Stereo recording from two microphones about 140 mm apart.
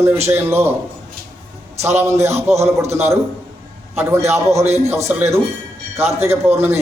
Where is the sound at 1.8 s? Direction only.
20° right (ahead or behind).